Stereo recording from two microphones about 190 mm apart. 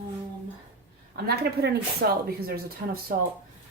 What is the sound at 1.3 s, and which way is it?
A woman's voice, 55° right (ahead or behind).